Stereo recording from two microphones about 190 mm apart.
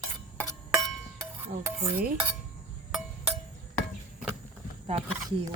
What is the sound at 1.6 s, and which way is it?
Stir, 10° right (ahead or behind).